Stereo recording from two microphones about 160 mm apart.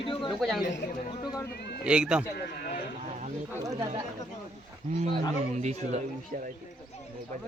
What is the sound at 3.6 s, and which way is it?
Speech, 20° right (ahead or behind).